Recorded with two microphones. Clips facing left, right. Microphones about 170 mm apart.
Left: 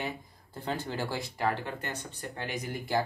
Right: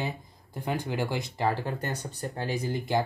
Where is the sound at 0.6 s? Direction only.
15° right (ahead or behind).